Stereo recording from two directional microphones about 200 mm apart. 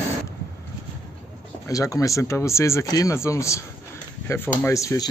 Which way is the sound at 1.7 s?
15° left (ahead or behind).